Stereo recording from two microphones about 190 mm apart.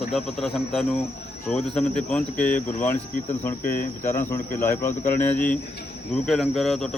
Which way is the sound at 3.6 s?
50° left (ahead or behind).